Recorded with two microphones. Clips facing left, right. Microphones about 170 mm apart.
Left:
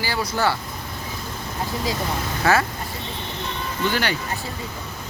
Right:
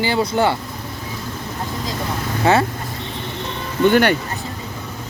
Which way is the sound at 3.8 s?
55° right (ahead or behind).